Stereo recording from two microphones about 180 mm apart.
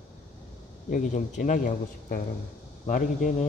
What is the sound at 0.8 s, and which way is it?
Speech, 45° left (ahead or behind).